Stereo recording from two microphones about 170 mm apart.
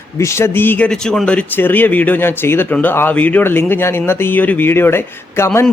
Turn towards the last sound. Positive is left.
turn(degrees=15)  # may be behind; listen again after turning